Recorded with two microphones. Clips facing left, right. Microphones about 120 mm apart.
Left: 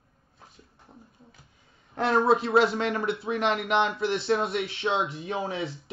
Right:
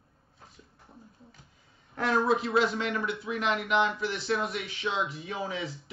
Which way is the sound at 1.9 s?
25° left (ahead or behind).